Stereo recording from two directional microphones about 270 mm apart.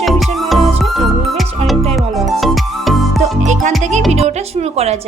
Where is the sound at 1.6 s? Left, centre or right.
Right.